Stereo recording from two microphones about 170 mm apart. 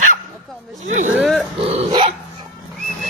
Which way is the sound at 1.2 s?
Centre (ahead or behind).